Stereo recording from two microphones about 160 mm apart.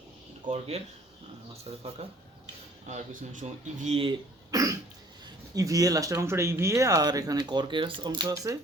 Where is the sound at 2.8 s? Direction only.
50° right (ahead or behind).